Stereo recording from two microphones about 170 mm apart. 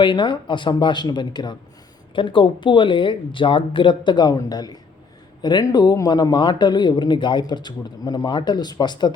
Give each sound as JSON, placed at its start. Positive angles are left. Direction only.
{"t": 0.0, "sound": "speech", "side_deg": 30}